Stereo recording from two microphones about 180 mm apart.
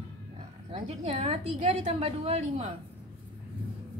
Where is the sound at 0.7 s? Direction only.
30° right (ahead or behind).